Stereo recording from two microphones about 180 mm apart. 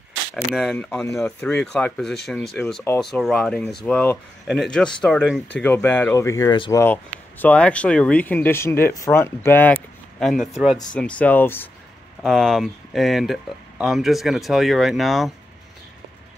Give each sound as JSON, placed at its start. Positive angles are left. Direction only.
{"t": 0.5, "sound": "speech", "side_deg": 0}
{"t": 3.0, "sound": "speech", "side_deg": 0}
{"t": 6.8, "sound": "speech", "side_deg": 10}